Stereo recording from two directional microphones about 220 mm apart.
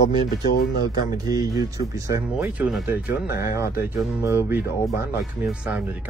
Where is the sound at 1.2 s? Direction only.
15° right (ahead or behind).